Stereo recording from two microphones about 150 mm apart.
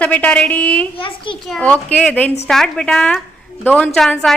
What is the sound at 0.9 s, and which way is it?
Speech, 35° left (ahead or behind).